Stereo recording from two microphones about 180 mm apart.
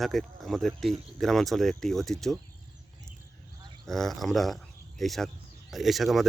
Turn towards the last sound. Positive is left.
turn(degrees=0)  # may be behind; listen again after turning